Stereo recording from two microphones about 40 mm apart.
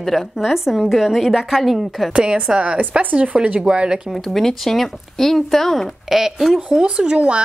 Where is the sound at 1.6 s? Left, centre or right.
Centre.